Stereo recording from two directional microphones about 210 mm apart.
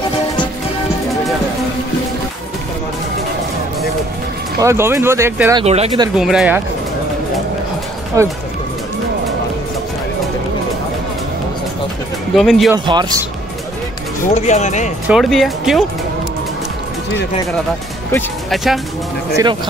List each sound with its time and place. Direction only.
4.6 s speech: 10° right (ahead or behind)
5.6 s speech: 30° right (ahead or behind)
6.1 s speech: 5° right (ahead or behind)
8.2 s speech: 15° right (ahead or behind)
12.4 s speech: centre (ahead or behind)
12.7 s speech: 20° right (ahead or behind)
14.3 s speech: 35° left (ahead or behind)
15.0 s speech: centre (ahead or behind)
18.1 s speech: centre (ahead or behind)
19.3 s speech: 20° right (ahead or behind)